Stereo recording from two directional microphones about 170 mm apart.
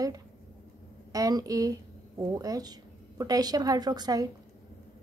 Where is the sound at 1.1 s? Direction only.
20° right (ahead or behind).